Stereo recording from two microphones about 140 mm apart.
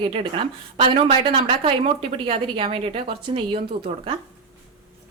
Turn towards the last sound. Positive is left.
turn(degrees=-40)  # may be behind; listen again after turning